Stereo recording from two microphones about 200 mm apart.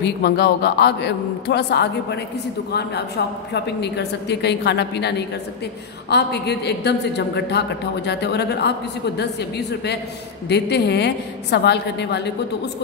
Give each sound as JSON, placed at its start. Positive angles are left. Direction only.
{"t": 0.0, "sound": "a woman's voice", "side_deg": 55}
{"t": 3.5, "sound": "a woman's voice", "side_deg": 60}
{"t": 10.5, "sound": "a woman's voice", "side_deg": 55}